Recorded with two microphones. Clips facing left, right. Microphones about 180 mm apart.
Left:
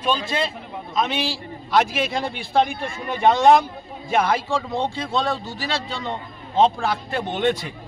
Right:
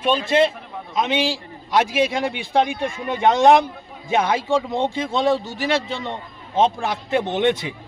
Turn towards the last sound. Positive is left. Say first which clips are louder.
# right 2 dB
turn(degrees=-20)  # may be behind; listen again after turning